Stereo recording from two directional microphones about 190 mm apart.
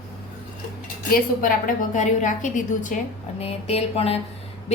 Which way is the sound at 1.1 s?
45° left (ahead or behind).